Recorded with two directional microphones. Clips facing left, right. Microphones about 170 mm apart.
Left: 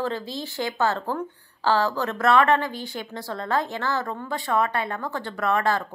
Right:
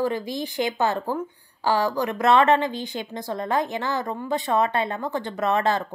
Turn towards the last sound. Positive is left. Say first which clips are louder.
# right 1 dB
turn(degrees=-20)  # may be behind; listen again after turning